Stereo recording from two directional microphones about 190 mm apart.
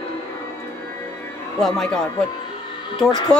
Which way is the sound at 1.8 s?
Centre (ahead or behind).